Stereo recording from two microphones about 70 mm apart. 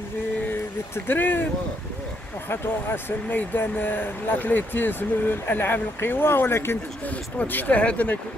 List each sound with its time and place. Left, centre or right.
0.9 s speech: left
2.5 s speech: left
7.1 s speech: left